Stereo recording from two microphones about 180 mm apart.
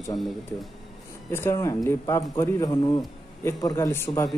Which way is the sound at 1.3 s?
15° left (ahead or behind).